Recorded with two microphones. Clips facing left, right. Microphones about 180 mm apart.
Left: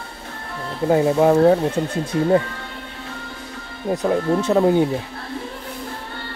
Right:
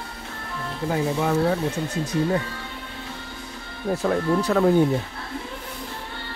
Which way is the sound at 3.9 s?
20° left (ahead or behind).